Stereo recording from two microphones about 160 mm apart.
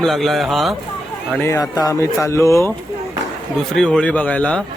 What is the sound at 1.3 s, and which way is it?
A man's voice, 15° left (ahead or behind).